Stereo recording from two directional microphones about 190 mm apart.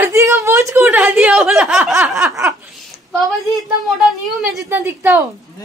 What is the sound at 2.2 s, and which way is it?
Speech, 15° right (ahead or behind).